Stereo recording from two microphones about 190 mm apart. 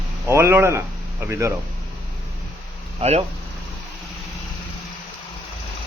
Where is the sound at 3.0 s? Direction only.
35° right (ahead or behind).